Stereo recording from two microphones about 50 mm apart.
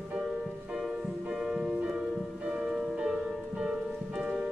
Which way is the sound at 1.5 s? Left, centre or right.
Centre.